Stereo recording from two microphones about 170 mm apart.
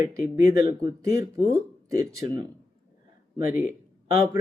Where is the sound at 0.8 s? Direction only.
20° right (ahead or behind).